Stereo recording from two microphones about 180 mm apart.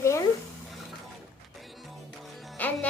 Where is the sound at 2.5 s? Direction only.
10° left (ahead or behind).